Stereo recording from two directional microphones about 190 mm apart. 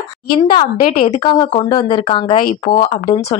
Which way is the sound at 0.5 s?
40° left (ahead or behind).